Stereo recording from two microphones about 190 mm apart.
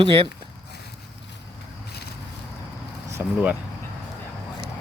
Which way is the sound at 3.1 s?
10° right (ahead or behind).